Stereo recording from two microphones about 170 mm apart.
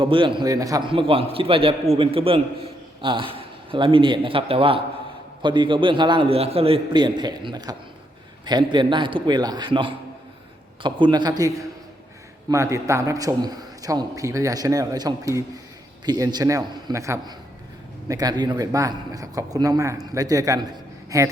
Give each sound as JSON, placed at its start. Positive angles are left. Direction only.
{"t": 0.0, "sound": "a man's voice", "side_deg": -30}